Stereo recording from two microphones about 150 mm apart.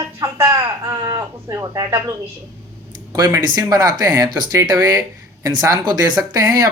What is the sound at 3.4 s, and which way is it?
Speech, 25° right (ahead or behind).